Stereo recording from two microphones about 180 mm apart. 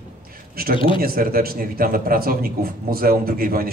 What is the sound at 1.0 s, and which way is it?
A man's voice, 55° right (ahead or behind).